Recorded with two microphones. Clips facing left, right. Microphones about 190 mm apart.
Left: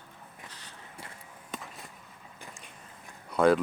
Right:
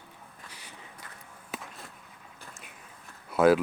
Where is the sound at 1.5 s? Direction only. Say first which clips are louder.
Right 1 dB; centre (ahead or behind).